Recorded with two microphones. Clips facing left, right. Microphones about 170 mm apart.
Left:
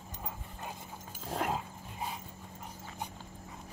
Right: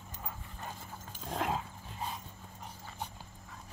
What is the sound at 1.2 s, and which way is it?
Dog, 5° left (ahead or behind).